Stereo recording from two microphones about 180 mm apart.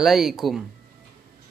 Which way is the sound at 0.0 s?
Centre (ahead or behind).